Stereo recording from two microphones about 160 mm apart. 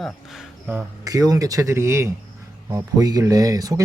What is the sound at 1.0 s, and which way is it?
Speech, 20° right (ahead or behind).